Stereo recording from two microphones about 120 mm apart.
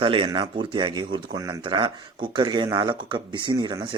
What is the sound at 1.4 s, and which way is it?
Speech, 30° right (ahead or behind).